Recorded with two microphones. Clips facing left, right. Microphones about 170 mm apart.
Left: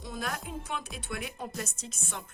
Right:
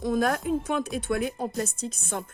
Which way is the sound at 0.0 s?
50° right (ahead or behind).